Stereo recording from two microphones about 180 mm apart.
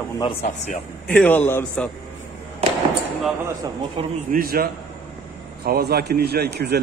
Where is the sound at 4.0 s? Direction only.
30° right (ahead or behind).